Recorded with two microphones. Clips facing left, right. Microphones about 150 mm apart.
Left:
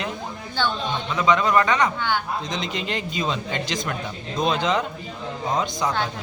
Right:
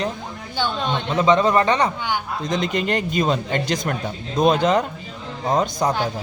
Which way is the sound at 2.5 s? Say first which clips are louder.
Right 6 dB; 55° right (ahead or behind).